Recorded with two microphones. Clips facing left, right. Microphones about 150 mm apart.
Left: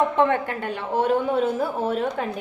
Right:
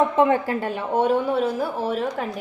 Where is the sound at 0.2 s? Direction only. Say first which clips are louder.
Right 2 dB; 30° right (ahead or behind).